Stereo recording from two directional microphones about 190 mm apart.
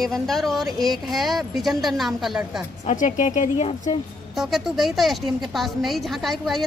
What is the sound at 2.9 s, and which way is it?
Speech, 40° left (ahead or behind).